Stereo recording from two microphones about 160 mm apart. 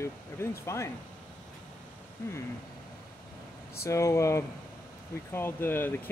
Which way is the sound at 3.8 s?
15° left (ahead or behind).